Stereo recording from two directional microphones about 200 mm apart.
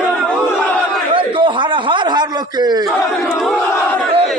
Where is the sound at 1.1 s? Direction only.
25° right (ahead or behind).